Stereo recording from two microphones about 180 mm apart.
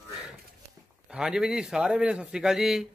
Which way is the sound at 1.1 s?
5° right (ahead or behind).